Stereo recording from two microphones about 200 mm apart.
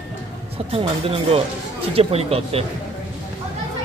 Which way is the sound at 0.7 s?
30° right (ahead or behind).